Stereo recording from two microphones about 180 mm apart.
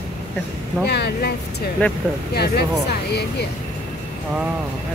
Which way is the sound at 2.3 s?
65° left (ahead or behind).